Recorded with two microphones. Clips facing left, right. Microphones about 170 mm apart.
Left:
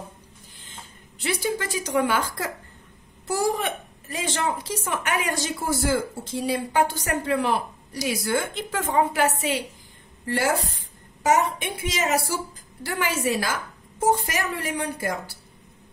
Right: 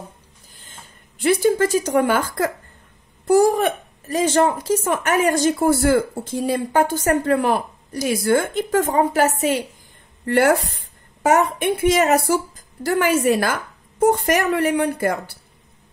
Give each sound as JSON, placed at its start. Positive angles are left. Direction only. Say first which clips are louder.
{"t": 0.7, "sound": "speech", "louder": "even", "side_deg": -50}
{"t": 10.2, "sound": "a woman's voice", "louder": "right 8 dB", "side_deg": -60}
{"t": 12.8, "sound": "a woman's voice", "louder": "right 8 dB", "side_deg": -45}